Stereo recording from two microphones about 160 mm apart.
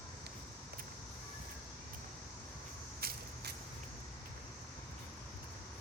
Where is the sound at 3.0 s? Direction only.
75° right (ahead or behind).